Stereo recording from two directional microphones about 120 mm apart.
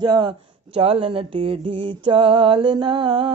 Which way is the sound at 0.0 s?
40° right (ahead or behind).